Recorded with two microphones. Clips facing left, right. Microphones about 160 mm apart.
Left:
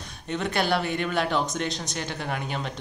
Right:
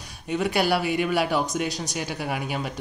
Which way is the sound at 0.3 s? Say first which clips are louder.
Right 3 dB; 10° right (ahead or behind).